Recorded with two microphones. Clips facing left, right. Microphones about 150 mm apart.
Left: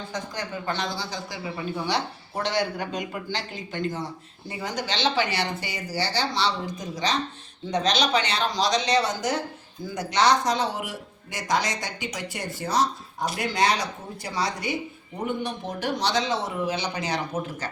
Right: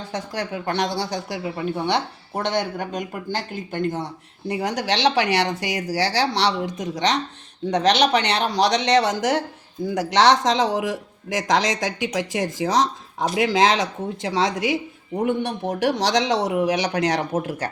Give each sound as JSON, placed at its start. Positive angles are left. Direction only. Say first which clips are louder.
{"t": 0.1, "sound": "speech", "louder": "right 7 dB", "side_deg": -65}
{"t": 4.4, "sound": "speech", "louder": "right 7 dB", "side_deg": -75}
{"t": 7.7, "sound": "speech", "louder": "right 5 dB", "side_deg": -70}
{"t": 15.3, "sound": "speech", "louder": "right 4 dB", "side_deg": -75}
{"t": 17.6, "sound": "speech", "louder": "right 6 dB", "side_deg": -65}